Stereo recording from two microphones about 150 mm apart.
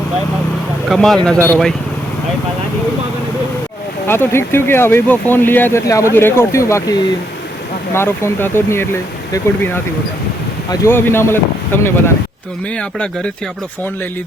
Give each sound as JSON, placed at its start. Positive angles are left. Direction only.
{"t": 0.9, "sound": "speech", "side_deg": 0}
{"t": 4.0, "sound": "speech", "side_deg": 15}
{"t": 7.9, "sound": "speech", "side_deg": 15}
{"t": 10.7, "sound": "speech", "side_deg": 15}